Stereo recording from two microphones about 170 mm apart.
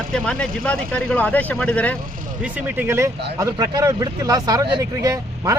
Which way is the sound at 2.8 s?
15° right (ahead or behind).